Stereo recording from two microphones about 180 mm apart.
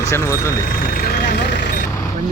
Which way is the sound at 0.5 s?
50° left (ahead or behind).